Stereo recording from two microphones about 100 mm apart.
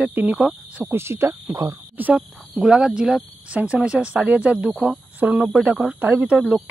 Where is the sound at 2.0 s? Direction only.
15° right (ahead or behind).